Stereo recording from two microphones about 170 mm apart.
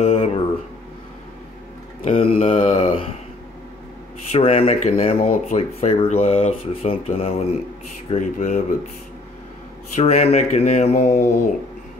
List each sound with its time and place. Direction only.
0.0 s a sound: 35° left (ahead or behind)
2.0 s mantra: 35° left (ahead or behind)
4.3 s speech: 35° left (ahead or behind)
8.1 s speech: 45° left (ahead or behind)
9.9 s speech: 35° left (ahead or behind)